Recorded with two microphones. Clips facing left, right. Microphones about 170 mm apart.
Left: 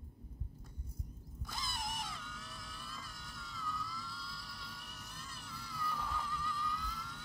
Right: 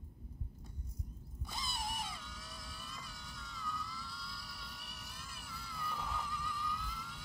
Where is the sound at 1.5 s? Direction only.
15° right (ahead or behind).